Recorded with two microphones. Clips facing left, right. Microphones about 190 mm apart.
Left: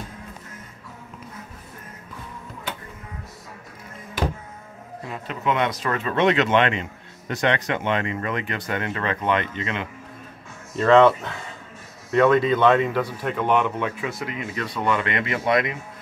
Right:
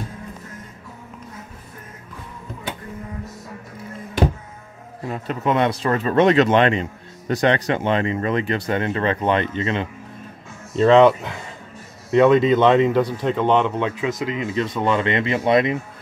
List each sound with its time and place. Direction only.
5.1 s speech: 40° right (ahead or behind)
10.8 s speech: 20° right (ahead or behind)